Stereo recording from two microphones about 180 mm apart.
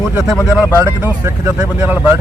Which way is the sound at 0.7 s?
10° right (ahead or behind).